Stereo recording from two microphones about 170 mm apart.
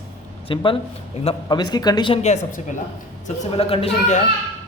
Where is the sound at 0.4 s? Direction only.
30° left (ahead or behind).